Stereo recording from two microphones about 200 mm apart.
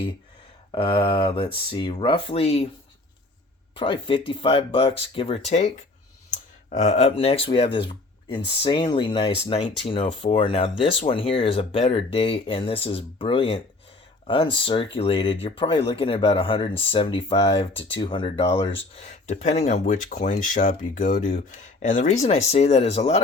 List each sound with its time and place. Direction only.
0.7 s speech: 25° left (ahead or behind)
3.8 s speech: 25° left (ahead or behind)